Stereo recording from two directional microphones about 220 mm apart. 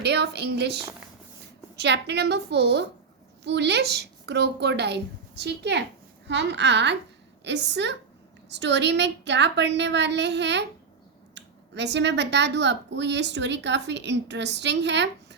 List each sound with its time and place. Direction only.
0.0 s speech: 50° right (ahead or behind)